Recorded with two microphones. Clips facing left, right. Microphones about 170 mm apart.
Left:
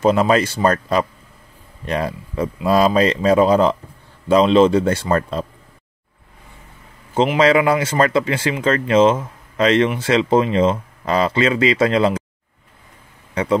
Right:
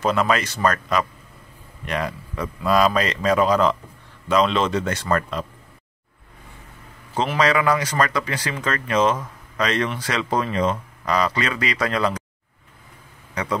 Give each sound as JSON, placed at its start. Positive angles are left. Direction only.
{"t": 0.0, "sound": "a man's voice", "side_deg": 30}
{"t": 7.3, "sound": "speech", "side_deg": 25}
{"t": 13.3, "sound": "speech", "side_deg": 25}